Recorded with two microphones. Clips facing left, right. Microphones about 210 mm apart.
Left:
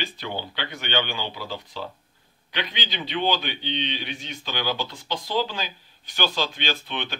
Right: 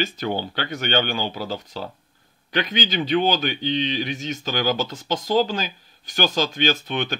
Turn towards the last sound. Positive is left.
turn(degrees=-45)  # may be behind; listen again after turning